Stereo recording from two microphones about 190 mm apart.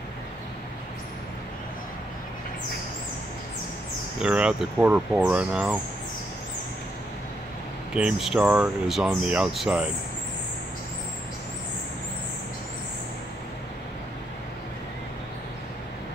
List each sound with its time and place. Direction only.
4.2 s speech: 5° right (ahead or behind)
7.9 s speech: 5° right (ahead or behind)